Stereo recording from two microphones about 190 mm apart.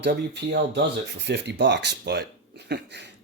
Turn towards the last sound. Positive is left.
turn(degrees=-65)  # may be behind; listen again after turning